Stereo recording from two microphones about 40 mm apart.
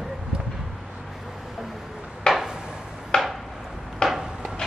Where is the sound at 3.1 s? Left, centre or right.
Centre.